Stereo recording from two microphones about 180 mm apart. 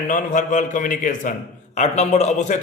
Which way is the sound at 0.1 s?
45° left (ahead or behind).